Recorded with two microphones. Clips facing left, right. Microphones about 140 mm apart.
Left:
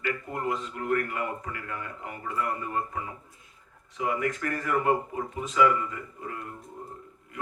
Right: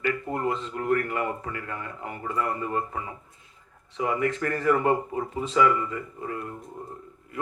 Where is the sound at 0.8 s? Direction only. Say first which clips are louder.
Right 4 dB; 35° right (ahead or behind).